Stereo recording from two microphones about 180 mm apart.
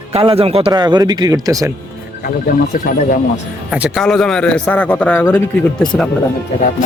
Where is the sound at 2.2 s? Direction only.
50° left (ahead or behind).